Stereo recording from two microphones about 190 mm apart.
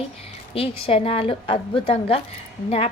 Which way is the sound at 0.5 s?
30° left (ahead or behind).